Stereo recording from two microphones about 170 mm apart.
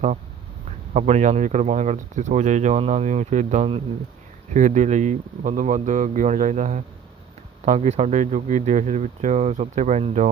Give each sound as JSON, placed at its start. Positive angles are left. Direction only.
{"t": 0.9, "sound": "speech", "side_deg": -45}